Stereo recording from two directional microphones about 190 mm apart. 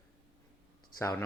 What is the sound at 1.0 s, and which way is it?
Speech, 15° left (ahead or behind).